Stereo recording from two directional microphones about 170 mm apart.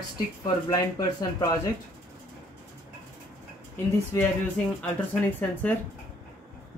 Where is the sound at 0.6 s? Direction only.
20° left (ahead or behind).